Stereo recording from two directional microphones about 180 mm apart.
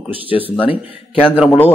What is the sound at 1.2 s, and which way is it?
Speech, 10° right (ahead or behind).